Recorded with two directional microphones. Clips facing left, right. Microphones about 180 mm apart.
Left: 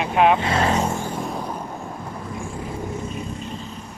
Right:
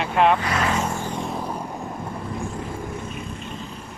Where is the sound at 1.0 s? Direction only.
5° left (ahead or behind).